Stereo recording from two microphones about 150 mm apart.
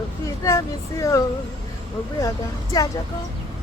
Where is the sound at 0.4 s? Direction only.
20° left (ahead or behind).